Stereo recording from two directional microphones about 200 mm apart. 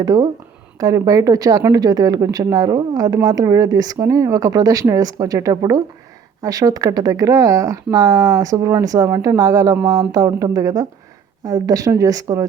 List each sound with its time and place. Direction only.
0.0 s speech: 20° right (ahead or behind)